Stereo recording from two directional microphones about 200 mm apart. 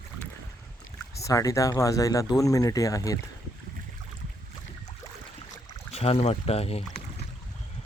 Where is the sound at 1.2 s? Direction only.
15° left (ahead or behind).